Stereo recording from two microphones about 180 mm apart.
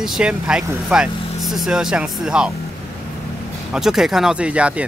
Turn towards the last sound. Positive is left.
turn(degrees=-5)  # may be behind; listen again after turning